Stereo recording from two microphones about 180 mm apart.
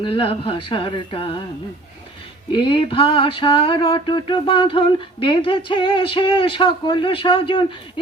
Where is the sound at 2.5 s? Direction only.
30° left (ahead or behind).